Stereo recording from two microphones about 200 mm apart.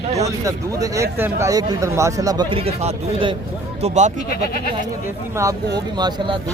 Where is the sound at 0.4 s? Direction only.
15° right (ahead or behind); by 4.1 s 35° right (ahead or behind).